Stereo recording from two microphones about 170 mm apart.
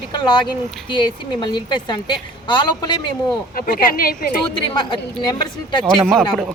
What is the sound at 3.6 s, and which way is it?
Speech, 55° left (ahead or behind).